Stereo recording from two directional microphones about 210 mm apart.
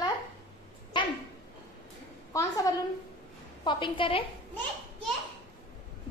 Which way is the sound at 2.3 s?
15° left (ahead or behind).